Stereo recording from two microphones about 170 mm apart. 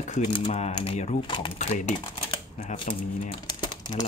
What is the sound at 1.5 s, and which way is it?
Speech, 45° left (ahead or behind).